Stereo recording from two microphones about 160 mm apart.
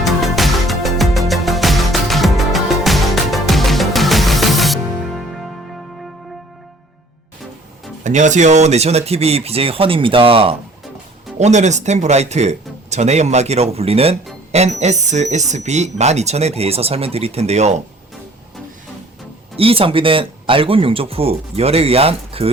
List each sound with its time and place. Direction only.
0.0 s music: centre (ahead or behind)
8.0 s speech: 50° right (ahead or behind); by 10.5 s 35° right (ahead or behind)
11.3 s speech: 45° right (ahead or behind)
19.5 s speech: 35° right (ahead or behind)